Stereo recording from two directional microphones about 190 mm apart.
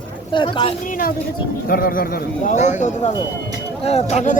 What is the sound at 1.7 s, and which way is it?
Speech, 50° left (ahead or behind).